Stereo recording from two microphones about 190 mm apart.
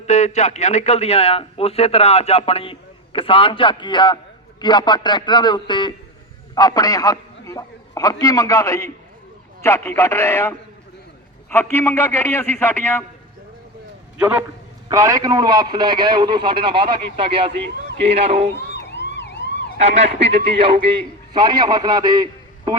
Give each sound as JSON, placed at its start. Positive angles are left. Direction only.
{"t": 0.1, "sound": "a man's voice", "side_deg": 35}
{"t": 14.2, "sound": "a man's voice", "side_deg": -5}
{"t": 18.7, "sound": "emergency vehicle", "side_deg": 65}
{"t": 19.8, "sound": "a man's voice", "side_deg": -35}